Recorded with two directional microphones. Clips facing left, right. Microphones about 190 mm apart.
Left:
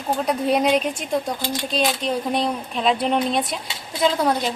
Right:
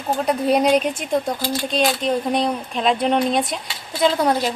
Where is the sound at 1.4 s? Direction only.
20° left (ahead or behind).